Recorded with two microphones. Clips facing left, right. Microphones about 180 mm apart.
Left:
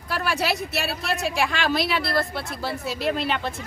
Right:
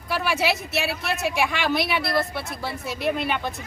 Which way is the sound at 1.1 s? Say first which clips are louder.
Even; centre (ahead or behind).